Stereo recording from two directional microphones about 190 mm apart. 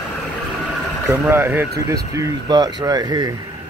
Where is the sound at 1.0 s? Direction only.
10° right (ahead or behind).